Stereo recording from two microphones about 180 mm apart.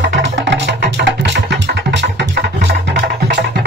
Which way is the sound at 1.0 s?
75° right (ahead or behind).